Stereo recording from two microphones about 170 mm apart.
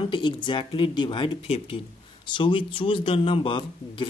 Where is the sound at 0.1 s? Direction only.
25° left (ahead or behind).